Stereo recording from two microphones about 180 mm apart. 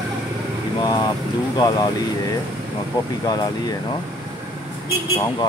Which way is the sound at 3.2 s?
20° left (ahead or behind).